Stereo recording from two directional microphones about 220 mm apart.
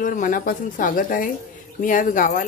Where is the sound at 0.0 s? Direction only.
35° left (ahead or behind).